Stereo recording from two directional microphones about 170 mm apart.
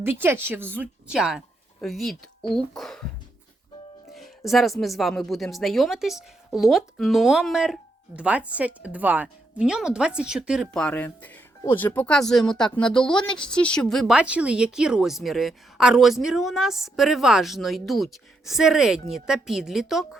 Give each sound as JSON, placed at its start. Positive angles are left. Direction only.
{"t": 0.0, "sound": "a woman's voice", "side_deg": -15}
{"t": 4.1, "sound": "speech", "side_deg": 0}
{"t": 10.8, "sound": "speech", "side_deg": 10}